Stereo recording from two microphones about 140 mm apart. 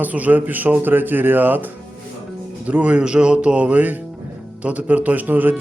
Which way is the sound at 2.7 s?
10° right (ahead or behind).